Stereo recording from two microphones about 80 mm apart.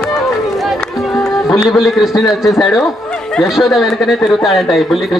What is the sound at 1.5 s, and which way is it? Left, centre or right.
A man's voice, centre.